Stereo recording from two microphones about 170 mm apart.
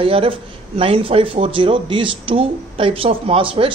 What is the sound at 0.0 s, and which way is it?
A man's voice, 35° right (ahead or behind).